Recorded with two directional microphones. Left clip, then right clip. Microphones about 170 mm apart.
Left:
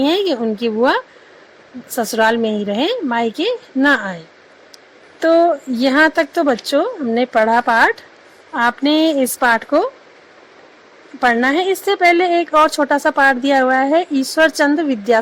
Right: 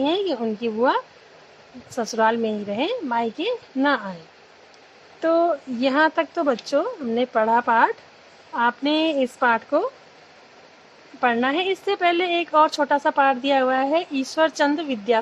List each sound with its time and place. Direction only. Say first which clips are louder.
0.0 s a woman's voice: left 6 dB; 25° left (ahead or behind)
5.2 s a woman's voice: left 7 dB; 25° left (ahead or behind)
11.2 s a woman's voice: left 6 dB; 20° left (ahead or behind)